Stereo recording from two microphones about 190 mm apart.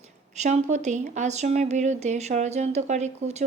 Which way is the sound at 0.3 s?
40° right (ahead or behind).